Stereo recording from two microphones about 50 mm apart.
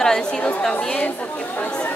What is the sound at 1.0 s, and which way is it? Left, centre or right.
Speech, left.